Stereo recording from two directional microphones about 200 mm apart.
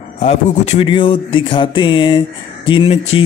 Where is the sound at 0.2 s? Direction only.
30° left (ahead or behind).